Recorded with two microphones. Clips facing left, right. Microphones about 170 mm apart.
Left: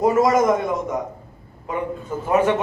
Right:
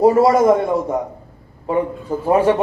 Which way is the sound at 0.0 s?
30° right (ahead or behind).